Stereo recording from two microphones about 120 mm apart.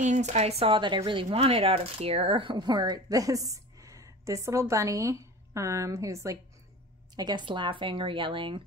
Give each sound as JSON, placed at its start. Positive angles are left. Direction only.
{"t": 0.0, "sound": "speech", "side_deg": -75}
{"t": 7.2, "sound": "speech", "side_deg": -40}